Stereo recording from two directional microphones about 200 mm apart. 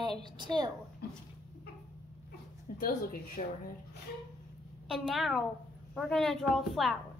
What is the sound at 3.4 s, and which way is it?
Speech, 40° left (ahead or behind).